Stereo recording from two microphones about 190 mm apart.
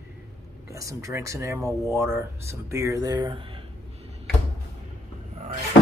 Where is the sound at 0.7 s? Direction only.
15° right (ahead or behind).